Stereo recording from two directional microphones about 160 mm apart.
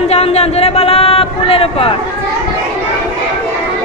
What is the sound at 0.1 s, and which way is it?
Speech, 40° left (ahead or behind).